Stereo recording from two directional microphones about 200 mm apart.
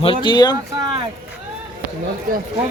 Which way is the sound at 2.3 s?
45° right (ahead or behind).